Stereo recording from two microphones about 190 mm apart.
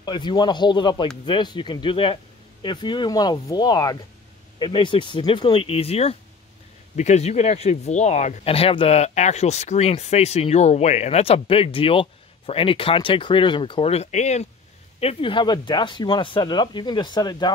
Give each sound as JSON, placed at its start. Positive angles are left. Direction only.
{"t": 0.0, "sound": "speech", "side_deg": 25}